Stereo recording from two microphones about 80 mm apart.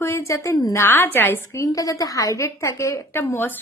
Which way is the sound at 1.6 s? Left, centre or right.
Left.